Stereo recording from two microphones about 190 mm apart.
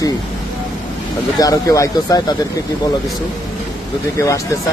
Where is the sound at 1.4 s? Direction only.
20° left (ahead or behind).